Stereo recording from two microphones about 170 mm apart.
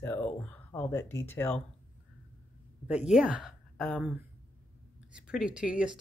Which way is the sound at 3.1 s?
5° right (ahead or behind).